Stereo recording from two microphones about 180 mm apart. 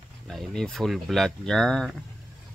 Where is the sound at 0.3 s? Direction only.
Centre (ahead or behind).